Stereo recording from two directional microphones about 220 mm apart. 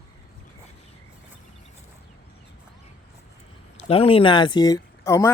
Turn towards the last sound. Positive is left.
turn(degrees=15)  # may be behind; listen again after turning